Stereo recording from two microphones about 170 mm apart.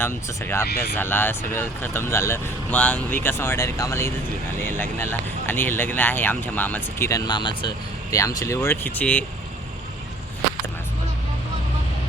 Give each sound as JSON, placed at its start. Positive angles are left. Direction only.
{"t": 0.0, "sound": "speech", "side_deg": 15}